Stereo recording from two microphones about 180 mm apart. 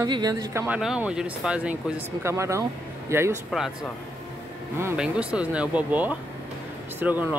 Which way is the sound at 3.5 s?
Centre (ahead or behind).